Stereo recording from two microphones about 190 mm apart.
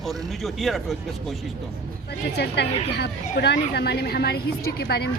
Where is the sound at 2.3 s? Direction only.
60° left (ahead or behind).